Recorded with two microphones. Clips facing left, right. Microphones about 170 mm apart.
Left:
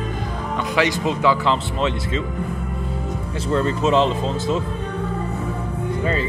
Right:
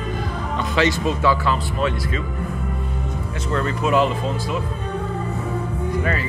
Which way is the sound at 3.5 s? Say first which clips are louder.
Left 2 dB; 25° left (ahead or behind).